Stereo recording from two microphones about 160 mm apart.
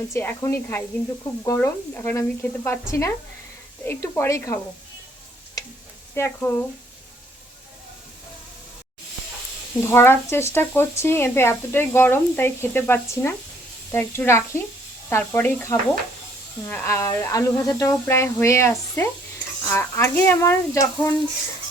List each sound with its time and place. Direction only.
0.1 s speech: 15° left (ahead or behind)
3.8 s speech: 15° left (ahead or behind)
5.6 s stir: 20° left (ahead or behind)
6.1 s speech: 15° left (ahead or behind)
9.8 s speech: 15° left (ahead or behind)